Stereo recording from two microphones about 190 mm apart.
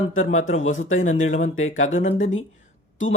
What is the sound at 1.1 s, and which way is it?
Speech, 90° left.